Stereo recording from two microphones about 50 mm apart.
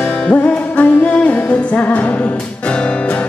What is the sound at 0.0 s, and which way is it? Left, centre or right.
Music, left.